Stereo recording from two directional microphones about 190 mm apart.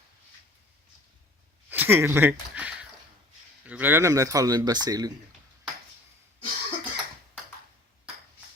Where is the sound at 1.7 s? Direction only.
10° right (ahead or behind).